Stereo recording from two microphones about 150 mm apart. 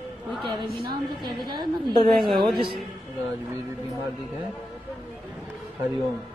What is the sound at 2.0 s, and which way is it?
Speech, centre (ahead or behind).